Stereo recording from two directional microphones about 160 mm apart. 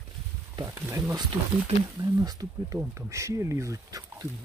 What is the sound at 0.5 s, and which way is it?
Speech, 15° right (ahead or behind).